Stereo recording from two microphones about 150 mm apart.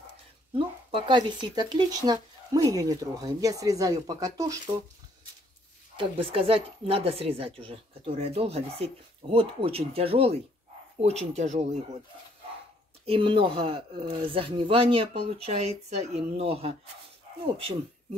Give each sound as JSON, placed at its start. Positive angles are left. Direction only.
{"t": 0.6, "sound": "speech", "side_deg": -35}
{"t": 5.9, "sound": "a woman's voice", "side_deg": -35}
{"t": 13.0, "sound": "a woman's voice", "side_deg": -40}